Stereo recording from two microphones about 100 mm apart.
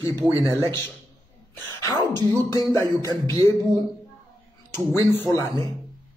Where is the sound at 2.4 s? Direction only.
35° left (ahead or behind).